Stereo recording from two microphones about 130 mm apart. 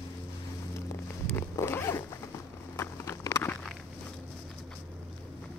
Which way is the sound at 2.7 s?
20° left (ahead or behind).